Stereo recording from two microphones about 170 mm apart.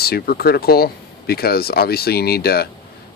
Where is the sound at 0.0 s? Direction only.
65° left (ahead or behind).